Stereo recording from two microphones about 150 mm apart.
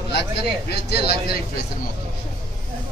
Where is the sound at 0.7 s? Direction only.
90° left.